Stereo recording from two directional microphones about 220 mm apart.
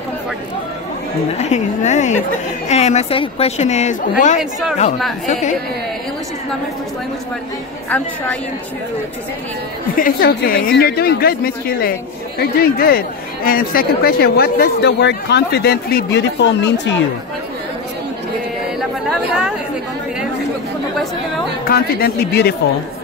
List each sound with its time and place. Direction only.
1.4 s a woman's voice: 30° left (ahead or behind)
4.4 s speech: centre (ahead or behind)
5.2 s a woman's voice: 35° left (ahead or behind)
9.9 s speech: 40° left (ahead or behind)
21.6 s speech: 45° left (ahead or behind)